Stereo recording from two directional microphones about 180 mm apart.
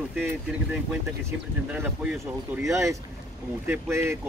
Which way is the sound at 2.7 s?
15° right (ahead or behind).